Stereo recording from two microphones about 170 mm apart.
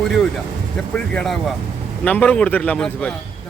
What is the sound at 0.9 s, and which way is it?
Speech, 5° left (ahead or behind).